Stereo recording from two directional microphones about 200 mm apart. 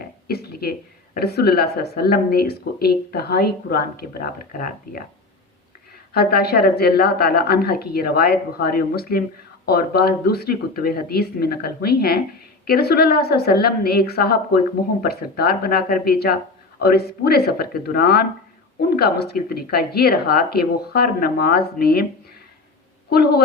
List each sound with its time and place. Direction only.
0.3 s a woman's voice: 50° left (ahead or behind)
6.1 s a woman's voice: 50° left (ahead or behind)
23.0 s a woman's voice: 50° left (ahead or behind)